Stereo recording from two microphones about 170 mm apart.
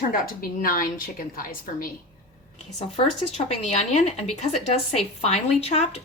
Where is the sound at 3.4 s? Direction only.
40° left (ahead or behind).